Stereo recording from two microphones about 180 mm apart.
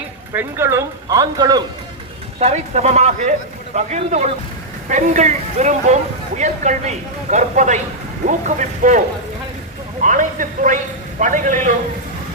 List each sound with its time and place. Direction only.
0.3 s speech: 15° right (ahead or behind)
2.4 s a man's voice: 40° right (ahead or behind)
10.0 s a man's voice: 45° right (ahead or behind)